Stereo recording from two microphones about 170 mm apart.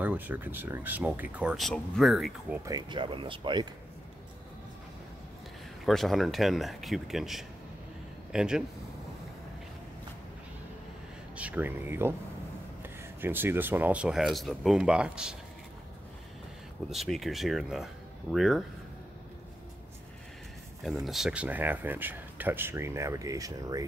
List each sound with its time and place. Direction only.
0.0 s speech: 10° right (ahead or behind)
2.6 s speech: 25° right (ahead or behind)
5.9 s speech: centre (ahead or behind)
11.3 s speech: 10° right (ahead or behind)
16.9 s speech: centre (ahead or behind)
20.8 s speech: centre (ahead or behind); by 23.9 s 20° right (ahead or behind)